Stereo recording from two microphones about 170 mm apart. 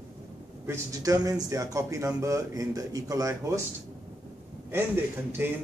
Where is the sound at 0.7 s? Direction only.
20° right (ahead or behind).